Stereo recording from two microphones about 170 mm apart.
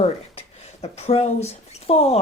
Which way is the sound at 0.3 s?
35° left (ahead or behind).